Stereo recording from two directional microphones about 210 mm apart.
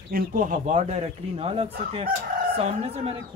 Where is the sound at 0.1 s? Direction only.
40° right (ahead or behind).